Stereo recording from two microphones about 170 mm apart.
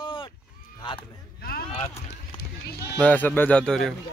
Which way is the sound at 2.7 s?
70° left (ahead or behind).